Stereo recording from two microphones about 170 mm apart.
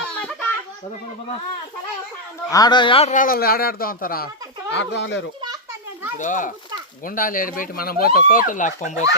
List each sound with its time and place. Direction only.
0.0 s a sound: 5° left (ahead or behind)
2.5 s speech: 25° left (ahead or behind)
3.1 s speech: 55° left (ahead or behind)
4.7 s speech: 90° left
6.1 s a child's voice: 50° left (ahead or behind)